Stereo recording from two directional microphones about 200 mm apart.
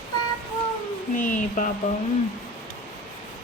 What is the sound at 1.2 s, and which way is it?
Speech, 40° left (ahead or behind).